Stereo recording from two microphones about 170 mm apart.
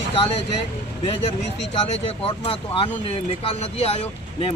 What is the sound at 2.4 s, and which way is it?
Speech, 35° left (ahead or behind).